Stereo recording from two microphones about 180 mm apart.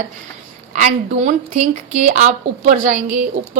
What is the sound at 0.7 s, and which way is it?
Speech, 40° right (ahead or behind).